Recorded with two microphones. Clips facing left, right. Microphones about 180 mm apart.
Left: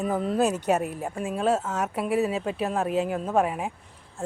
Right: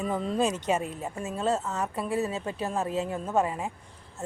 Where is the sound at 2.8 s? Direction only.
80° left.